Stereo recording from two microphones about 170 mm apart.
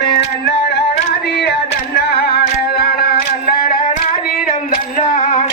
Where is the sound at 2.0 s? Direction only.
70° left (ahead or behind).